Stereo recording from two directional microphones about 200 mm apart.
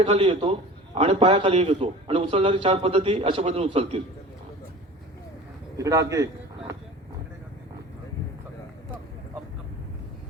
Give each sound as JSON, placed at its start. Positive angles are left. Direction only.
{"t": 0.0, "sound": "a man's voice", "side_deg": -30}
{"t": 5.7, "sound": "a man's voice", "side_deg": -15}